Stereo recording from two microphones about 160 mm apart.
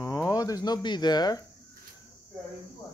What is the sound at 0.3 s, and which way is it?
Speech, 25° left (ahead or behind).